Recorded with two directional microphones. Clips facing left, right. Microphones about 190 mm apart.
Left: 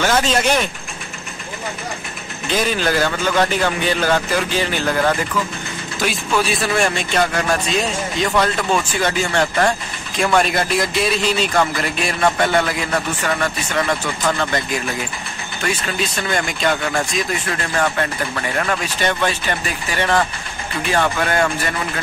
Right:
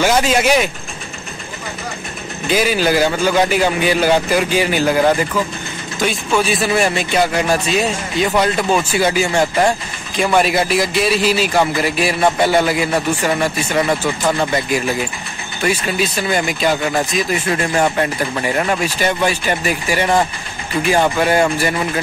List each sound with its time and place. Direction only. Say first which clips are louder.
0.0 s speech: right 3 dB; 10° right (ahead or behind)
2.5 s speech: right 4 dB; 5° right (ahead or behind)
5.9 s a man's voice: right 3 dB; centre (ahead or behind)
15.6 s a man's voice: right 5 dB; 10° right (ahead or behind)
17.5 s speech: right 4 dB; 15° right (ahead or behind)